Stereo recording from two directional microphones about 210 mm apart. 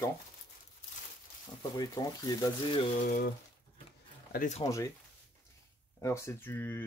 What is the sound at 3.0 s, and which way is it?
Speech, 40° left (ahead or behind).